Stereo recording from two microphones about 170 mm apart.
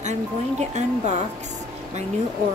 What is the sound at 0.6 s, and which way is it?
Speech, 40° right (ahead or behind).